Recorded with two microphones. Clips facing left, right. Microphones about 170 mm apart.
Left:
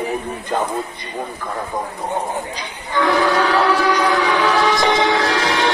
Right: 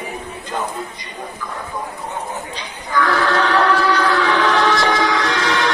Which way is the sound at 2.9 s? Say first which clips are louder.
Left 1 dB; 20° left (ahead or behind).